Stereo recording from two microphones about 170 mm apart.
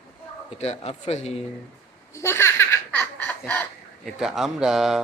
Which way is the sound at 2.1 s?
15° left (ahead or behind).